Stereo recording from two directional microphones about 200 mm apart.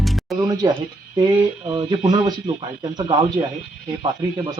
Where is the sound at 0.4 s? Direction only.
20° right (ahead or behind).